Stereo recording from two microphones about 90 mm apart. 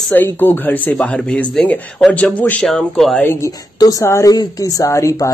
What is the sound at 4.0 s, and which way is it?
Speech, 30° left (ahead or behind).